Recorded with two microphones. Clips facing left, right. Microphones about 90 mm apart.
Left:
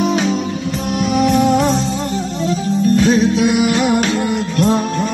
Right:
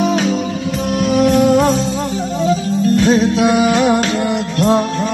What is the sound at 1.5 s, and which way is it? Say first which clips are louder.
Music: right 2 dB; centre (ahead or behind).